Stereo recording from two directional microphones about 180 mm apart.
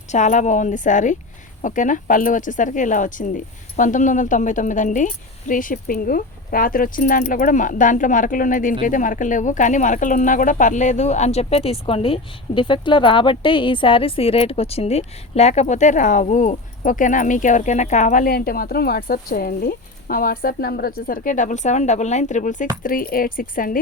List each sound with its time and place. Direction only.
0.1 s speech: 40° left (ahead or behind)